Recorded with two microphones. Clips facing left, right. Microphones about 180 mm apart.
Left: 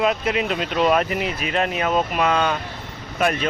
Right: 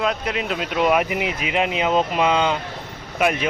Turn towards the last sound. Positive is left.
turn(degrees=-10)  # may be behind; listen again after turning